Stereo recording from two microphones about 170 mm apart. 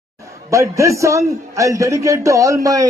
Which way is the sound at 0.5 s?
20° right (ahead or behind).